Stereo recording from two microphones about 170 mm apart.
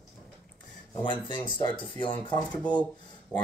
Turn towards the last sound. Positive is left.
turn(degrees=10)  # may be behind; listen again after turning